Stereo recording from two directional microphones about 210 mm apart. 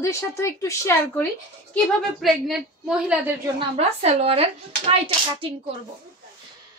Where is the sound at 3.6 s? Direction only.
30° right (ahead or behind).